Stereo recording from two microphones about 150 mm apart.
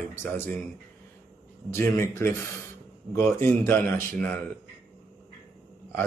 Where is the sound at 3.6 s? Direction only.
10° left (ahead or behind).